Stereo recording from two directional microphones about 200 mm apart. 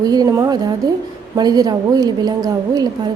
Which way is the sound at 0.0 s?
20° right (ahead or behind).